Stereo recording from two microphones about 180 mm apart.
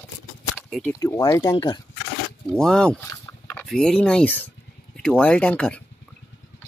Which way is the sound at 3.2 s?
15° left (ahead or behind).